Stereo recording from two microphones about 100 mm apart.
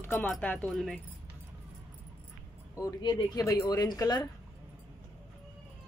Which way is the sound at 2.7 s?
40° left (ahead or behind).